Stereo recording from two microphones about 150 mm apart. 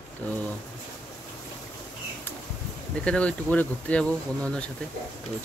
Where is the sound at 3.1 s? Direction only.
10° left (ahead or behind).